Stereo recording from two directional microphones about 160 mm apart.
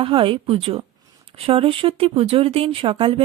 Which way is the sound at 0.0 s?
35° right (ahead or behind).